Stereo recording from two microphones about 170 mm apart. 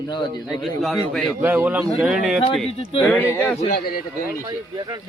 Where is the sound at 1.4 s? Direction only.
10° right (ahead or behind).